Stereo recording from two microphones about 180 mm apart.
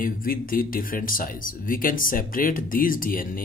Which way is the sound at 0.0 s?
50° left (ahead or behind).